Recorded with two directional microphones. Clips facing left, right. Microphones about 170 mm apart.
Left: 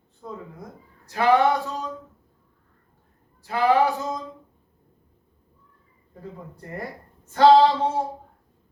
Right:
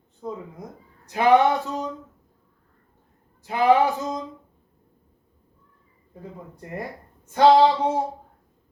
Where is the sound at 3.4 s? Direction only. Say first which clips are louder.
Right 1 dB; 20° right (ahead or behind).